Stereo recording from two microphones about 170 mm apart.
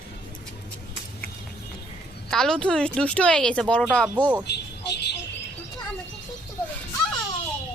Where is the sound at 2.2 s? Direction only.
5° left (ahead or behind).